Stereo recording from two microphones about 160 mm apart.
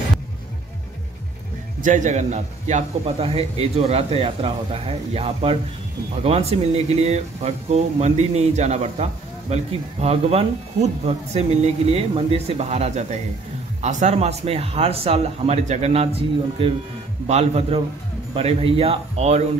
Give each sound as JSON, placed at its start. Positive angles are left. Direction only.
{"t": 1.8, "sound": "speech", "side_deg": -50}